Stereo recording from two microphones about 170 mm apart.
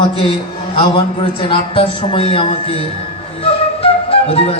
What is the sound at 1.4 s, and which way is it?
A woman's voice, 30° left (ahead or behind).